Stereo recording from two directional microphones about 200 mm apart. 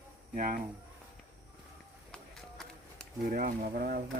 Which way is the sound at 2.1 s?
5° left (ahead or behind).